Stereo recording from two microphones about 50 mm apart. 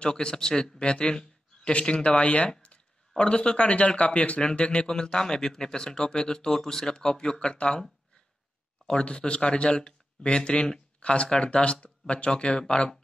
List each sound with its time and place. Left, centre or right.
0.0 s a man's voice: centre
8.8 s speech: centre